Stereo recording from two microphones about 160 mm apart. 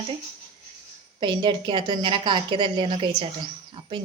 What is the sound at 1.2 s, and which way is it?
Speech, 30° right (ahead or behind).